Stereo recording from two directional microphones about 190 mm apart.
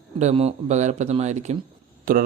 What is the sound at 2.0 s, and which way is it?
Speech, 50° right (ahead or behind).